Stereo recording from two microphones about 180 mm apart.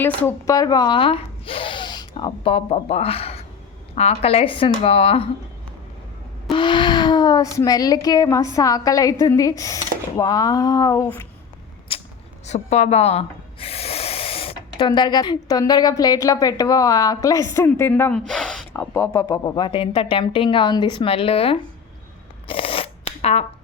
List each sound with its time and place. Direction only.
0.0 s speech: 10° left (ahead or behind); by 5.3 s 30° left (ahead or behind)
6.5 s speech: 25° left (ahead or behind)
11.9 s creak: 30° left (ahead or behind)
12.5 s speech: 40° left (ahead or behind)
22.4 s a sound: 30° left (ahead or behind)